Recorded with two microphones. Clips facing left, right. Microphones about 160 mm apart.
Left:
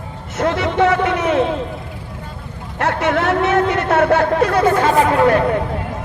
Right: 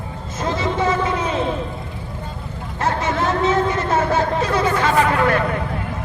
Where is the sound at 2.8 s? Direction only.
70° left (ahead or behind); by 4.9 s 50° left (ahead or behind).